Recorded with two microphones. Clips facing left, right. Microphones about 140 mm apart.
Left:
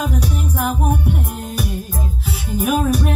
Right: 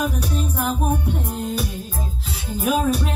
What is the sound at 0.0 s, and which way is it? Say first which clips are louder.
Music: left 1 dB; 15° left (ahead or behind).